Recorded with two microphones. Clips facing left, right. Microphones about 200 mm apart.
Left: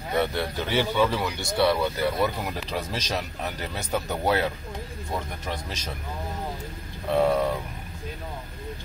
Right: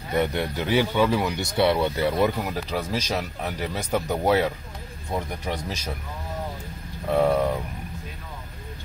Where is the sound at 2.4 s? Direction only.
10° right (ahead or behind).